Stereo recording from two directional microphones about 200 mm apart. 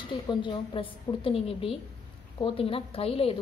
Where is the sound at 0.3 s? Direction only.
25° left (ahead or behind).